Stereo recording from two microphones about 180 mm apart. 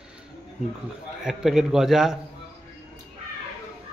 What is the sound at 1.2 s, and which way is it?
Speech, centre (ahead or behind).